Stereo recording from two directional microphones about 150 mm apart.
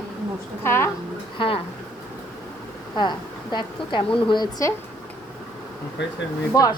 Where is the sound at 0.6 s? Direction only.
15° left (ahead or behind).